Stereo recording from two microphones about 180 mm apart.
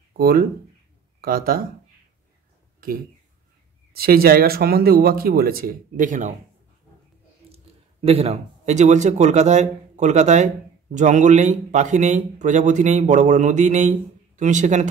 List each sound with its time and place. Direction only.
0.2 s speech: 55° right (ahead or behind)
3.9 s speech: 55° right (ahead or behind)
7.5 s a man's voice: 35° right (ahead or behind)